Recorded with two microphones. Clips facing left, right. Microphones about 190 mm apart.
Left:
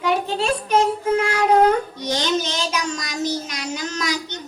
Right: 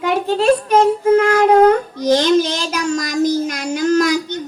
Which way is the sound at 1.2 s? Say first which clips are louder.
Right 4 dB; 50° right (ahead or behind).